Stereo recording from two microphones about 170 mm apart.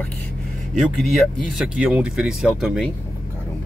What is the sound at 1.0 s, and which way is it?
Speech, centre (ahead or behind).